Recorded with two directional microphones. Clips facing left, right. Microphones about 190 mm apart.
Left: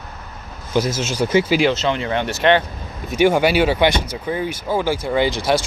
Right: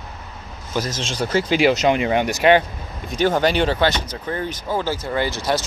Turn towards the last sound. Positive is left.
turn(degrees=15)  # may be behind; listen again after turning